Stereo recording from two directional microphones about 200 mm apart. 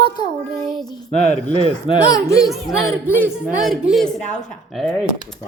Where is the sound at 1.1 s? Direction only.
35° left (ahead or behind).